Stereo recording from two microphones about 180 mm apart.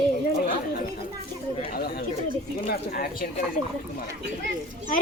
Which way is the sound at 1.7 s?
60° left (ahead or behind).